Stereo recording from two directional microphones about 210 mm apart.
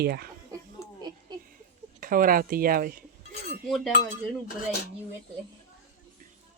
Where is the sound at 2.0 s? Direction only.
40° right (ahead or behind).